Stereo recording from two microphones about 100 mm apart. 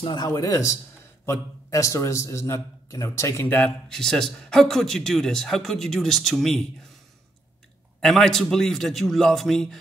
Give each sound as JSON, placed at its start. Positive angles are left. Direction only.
{"t": 0.0, "sound": "speech", "side_deg": 50}
{"t": 0.3, "sound": "a man's voice", "side_deg": 35}
{"t": 3.4, "sound": "speech", "side_deg": 20}
{"t": 3.9, "sound": "speech", "side_deg": 5}
{"t": 8.0, "sound": "speech", "side_deg": 5}